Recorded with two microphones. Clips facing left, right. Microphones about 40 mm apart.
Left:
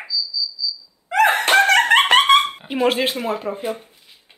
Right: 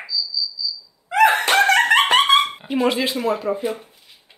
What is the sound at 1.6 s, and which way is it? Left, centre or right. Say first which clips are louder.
Dog: even; left.